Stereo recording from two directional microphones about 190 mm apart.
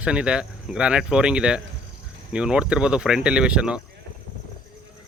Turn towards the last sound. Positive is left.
turn(degrees=-5)  # may be behind; listen again after turning